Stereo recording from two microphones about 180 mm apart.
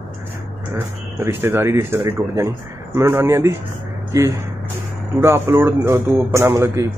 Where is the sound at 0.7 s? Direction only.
15° right (ahead or behind).